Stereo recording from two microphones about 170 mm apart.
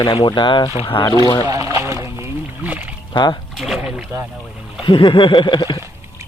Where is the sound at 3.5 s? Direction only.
Centre (ahead or behind).